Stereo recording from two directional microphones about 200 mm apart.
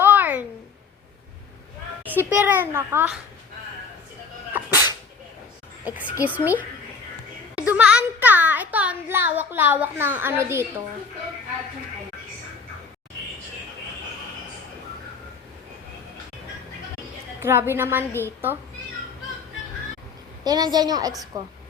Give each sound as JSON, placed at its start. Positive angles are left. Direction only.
{"t": 0.0, "sound": "a sound", "side_deg": -10}
{"t": 2.0, "sound": "a child's voice", "side_deg": -10}
{"t": 4.5, "sound": "sneeze", "side_deg": -10}
{"t": 5.8, "sound": "a child's voice", "side_deg": -5}
{"t": 7.5, "sound": "a sound", "side_deg": -5}
{"t": 17.4, "sound": "a child's voice", "side_deg": -10}
{"t": 20.4, "sound": "a woman's voice", "side_deg": -20}